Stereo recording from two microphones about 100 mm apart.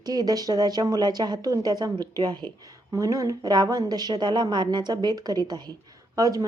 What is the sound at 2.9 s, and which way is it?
A woman's voice, 35° right (ahead or behind).